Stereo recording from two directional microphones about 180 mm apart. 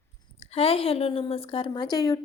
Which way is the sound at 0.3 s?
30° left (ahead or behind).